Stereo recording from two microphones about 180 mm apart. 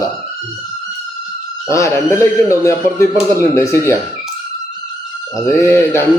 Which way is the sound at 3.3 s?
15° left (ahead or behind).